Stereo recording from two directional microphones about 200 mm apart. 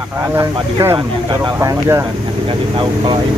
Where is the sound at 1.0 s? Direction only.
25° right (ahead or behind).